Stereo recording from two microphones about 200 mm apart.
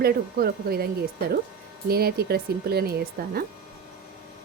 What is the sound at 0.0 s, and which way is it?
Speech, 50° right (ahead or behind).